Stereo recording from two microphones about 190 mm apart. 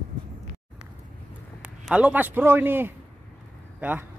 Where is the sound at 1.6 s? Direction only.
5° right (ahead or behind).